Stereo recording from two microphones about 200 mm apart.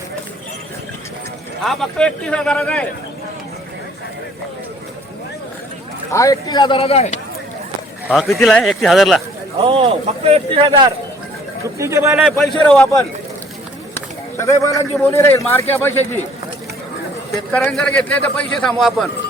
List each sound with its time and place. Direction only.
1.6 s a man's voice: centre (ahead or behind)
6.1 s speech: 15° left (ahead or behind); by 7.1 s 30° left (ahead or behind)
8.0 s a man's voice: centre (ahead or behind)
9.6 s a man's voice: 25° right (ahead or behind)
12.1 s a man's voice: centre (ahead or behind)
13.9 s a sound: 15° left (ahead or behind)
14.9 s a man's voice: 10° left (ahead or behind)
17.5 s a man's voice: 5° left (ahead or behind)